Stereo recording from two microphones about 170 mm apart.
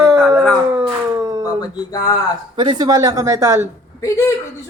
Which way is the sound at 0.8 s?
15° right (ahead or behind).